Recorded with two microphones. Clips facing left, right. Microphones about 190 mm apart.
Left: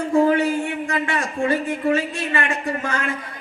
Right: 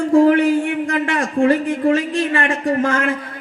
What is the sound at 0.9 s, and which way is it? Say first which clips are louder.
Speech: right 5 dB; 50° right (ahead or behind).